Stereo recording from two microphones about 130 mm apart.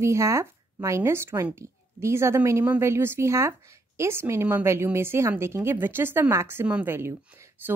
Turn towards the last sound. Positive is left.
turn(degrees=-15)  # may be behind; listen again after turning